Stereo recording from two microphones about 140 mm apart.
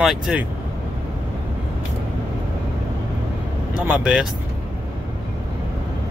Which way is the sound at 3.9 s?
5° right (ahead or behind).